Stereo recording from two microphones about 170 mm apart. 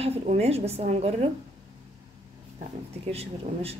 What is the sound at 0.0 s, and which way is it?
A woman's voice, 40° right (ahead or behind).